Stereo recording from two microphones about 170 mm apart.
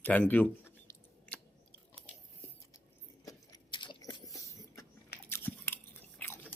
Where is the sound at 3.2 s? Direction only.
25° left (ahead or behind).